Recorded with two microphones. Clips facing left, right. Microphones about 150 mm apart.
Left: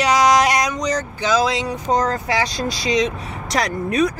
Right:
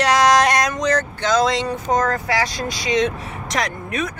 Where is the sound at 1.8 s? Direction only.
25° left (ahead or behind).